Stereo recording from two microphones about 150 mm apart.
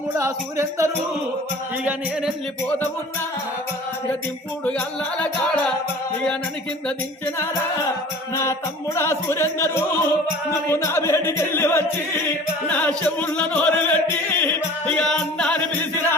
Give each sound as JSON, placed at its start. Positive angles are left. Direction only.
{"t": 0.2, "sound": "speech", "side_deg": -20}
{"t": 1.8, "sound": "music", "side_deg": -10}
{"t": 4.6, "sound": "chant", "side_deg": 10}
{"t": 6.8, "sound": "chant", "side_deg": 15}
{"t": 8.3, "sound": "music", "side_deg": 20}
{"t": 9.0, "sound": "chant", "side_deg": 15}